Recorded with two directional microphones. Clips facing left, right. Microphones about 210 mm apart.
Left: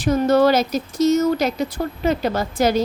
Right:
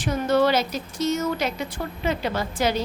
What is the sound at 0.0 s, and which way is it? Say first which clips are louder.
A woman's voice: left 5 dB; 40° left (ahead or behind).